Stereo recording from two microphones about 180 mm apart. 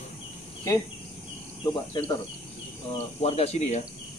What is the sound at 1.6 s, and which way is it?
Speech, 25° left (ahead or behind).